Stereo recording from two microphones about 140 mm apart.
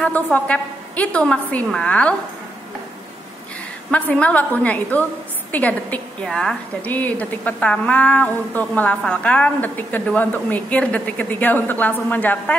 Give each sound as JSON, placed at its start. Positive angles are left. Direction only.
{"t": 0.0, "sound": "a woman's voice", "side_deg": 10}
{"t": 3.9, "sound": "a woman's voice", "side_deg": 10}